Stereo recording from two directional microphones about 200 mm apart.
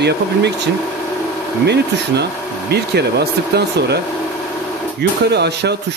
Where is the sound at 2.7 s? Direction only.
55° right (ahead or behind).